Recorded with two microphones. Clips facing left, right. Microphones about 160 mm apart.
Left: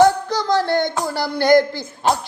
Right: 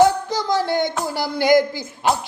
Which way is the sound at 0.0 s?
15° right (ahead or behind).